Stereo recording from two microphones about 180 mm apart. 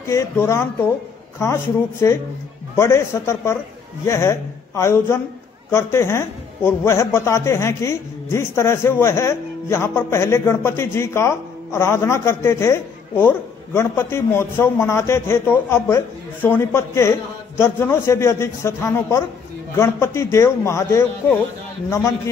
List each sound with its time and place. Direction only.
0.0 s a woman's voice: 15° left (ahead or behind)